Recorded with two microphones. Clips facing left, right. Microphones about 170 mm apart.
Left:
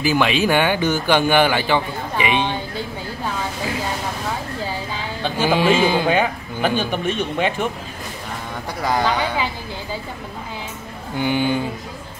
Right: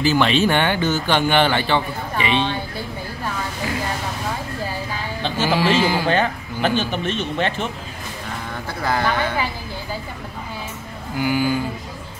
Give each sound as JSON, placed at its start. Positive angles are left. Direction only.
{"t": 0.0, "sound": "speech", "side_deg": 10}
{"t": 5.2, "sound": "speech", "side_deg": 15}
{"t": 6.0, "sound": "speech", "side_deg": 10}
{"t": 8.8, "sound": "speech", "side_deg": 15}
{"t": 11.1, "sound": "speech", "side_deg": 25}